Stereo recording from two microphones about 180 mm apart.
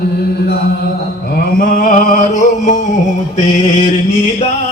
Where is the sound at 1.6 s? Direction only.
55° left (ahead or behind).